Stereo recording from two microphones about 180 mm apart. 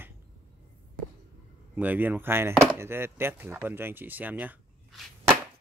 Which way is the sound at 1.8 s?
10° right (ahead or behind).